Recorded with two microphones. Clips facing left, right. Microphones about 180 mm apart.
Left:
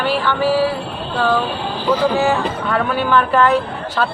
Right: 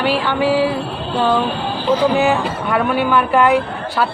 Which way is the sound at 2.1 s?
15° right (ahead or behind).